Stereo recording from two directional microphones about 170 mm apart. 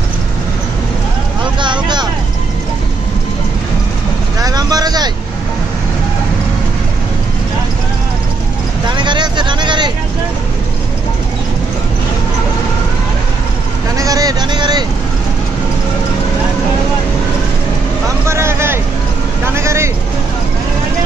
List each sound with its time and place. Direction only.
1.6 s vehicle: 25° right (ahead or behind)
4.4 s vehicle: 20° right (ahead or behind)
8.9 s vehicle: 25° right (ahead or behind)
13.9 s vehicle: 20° right (ahead or behind)
18.3 s vehicle: 15° right (ahead or behind)